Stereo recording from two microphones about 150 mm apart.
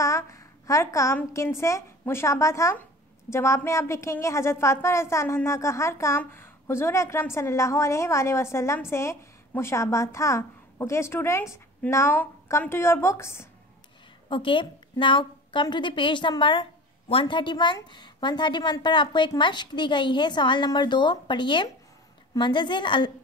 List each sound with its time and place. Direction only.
0.0 s a woman's voice: 20° left (ahead or behind)
14.3 s a woman's voice: 35° left (ahead or behind)